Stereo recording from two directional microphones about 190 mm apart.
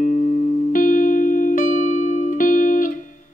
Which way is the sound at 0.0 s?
40° left (ahead or behind).